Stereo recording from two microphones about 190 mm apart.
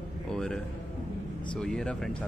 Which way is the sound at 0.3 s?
5° left (ahead or behind).